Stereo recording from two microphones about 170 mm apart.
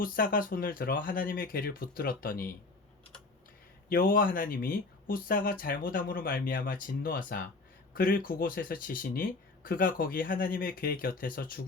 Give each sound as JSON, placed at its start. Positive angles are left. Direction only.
{"t": 0.0, "sound": "speech", "side_deg": 55}
{"t": 3.8, "sound": "speech", "side_deg": 55}